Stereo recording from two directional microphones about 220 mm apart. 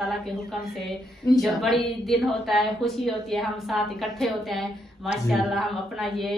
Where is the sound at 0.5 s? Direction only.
Centre (ahead or behind).